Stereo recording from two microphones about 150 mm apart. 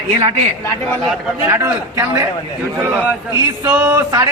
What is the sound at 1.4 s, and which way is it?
A man's voice, 20° right (ahead or behind).